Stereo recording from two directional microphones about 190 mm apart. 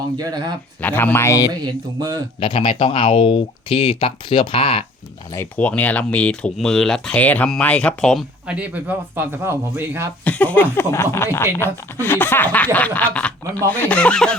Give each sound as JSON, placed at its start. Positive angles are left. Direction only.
{"t": 0.2, "sound": "speech", "side_deg": -20}
{"t": 0.8, "sound": "speech", "side_deg": 10}
{"t": 1.6, "sound": "speech", "side_deg": -20}
{"t": 2.4, "sound": "speech", "side_deg": 25}
{"t": 5.3, "sound": "speech", "side_deg": 10}
{"t": 8.4, "sound": "speech", "side_deg": -5}
{"t": 10.2, "sound": "speech", "side_deg": 10}